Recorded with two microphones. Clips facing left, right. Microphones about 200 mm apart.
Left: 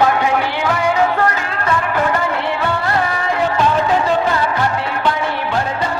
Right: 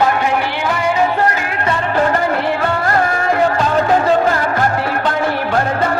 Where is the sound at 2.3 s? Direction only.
50° right (ahead or behind).